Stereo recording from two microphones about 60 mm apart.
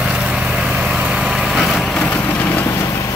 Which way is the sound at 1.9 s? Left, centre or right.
Centre.